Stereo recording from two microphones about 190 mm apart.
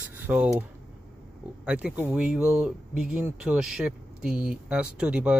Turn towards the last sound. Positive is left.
turn(degrees=-5)  # may be behind; listen again after turning